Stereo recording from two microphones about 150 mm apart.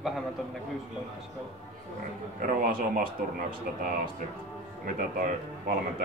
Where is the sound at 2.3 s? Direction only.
70° right (ahead or behind).